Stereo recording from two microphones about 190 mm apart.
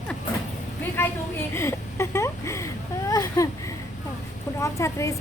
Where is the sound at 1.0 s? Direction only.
10° left (ahead or behind).